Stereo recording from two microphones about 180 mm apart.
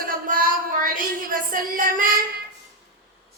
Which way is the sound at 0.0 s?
50° right (ahead or behind).